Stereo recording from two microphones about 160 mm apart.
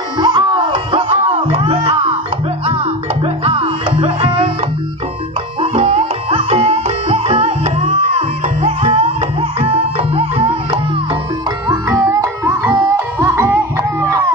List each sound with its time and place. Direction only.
0.2 s music: 30° right (ahead or behind)
3.4 s music: 35° right (ahead or behind)
5.6 s music: 40° right (ahead or behind)
11.7 s music: 20° right (ahead or behind)